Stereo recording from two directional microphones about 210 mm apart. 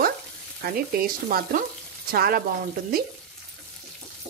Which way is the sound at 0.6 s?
45° right (ahead or behind).